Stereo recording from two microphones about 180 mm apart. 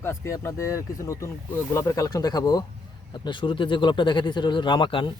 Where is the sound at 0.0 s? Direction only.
15° left (ahead or behind).